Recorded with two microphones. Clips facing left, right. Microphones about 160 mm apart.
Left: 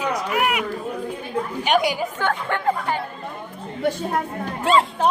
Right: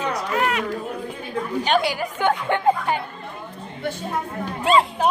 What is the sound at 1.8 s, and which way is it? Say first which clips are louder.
Speech: left 1 dB; 20° left (ahead or behind).